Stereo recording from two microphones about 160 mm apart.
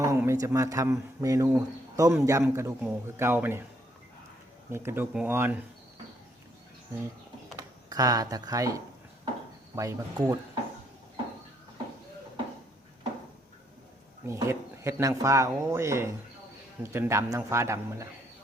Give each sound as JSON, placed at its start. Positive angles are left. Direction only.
{"t": 0.0, "sound": "speech", "side_deg": -20}
{"t": 4.7, "sound": "speech", "side_deg": -15}
{"t": 7.9, "sound": "speech", "side_deg": -25}
{"t": 14.3, "sound": "speech", "side_deg": -15}